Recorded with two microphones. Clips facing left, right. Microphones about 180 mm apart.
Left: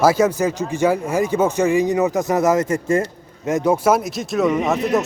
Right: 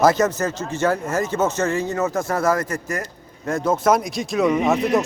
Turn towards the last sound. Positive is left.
turn(degrees=0)  # may be behind; listen again after turning